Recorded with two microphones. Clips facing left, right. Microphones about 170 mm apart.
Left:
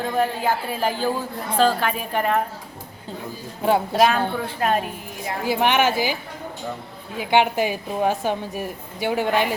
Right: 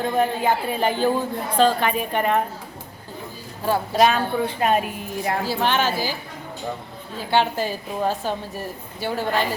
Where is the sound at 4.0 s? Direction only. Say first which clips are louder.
Right 1 dB; centre (ahead or behind).